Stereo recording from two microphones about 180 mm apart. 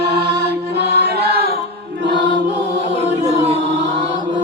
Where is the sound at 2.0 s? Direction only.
75° right (ahead or behind).